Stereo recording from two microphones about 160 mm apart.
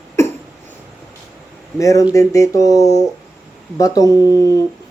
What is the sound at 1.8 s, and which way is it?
Speech, 20° left (ahead or behind).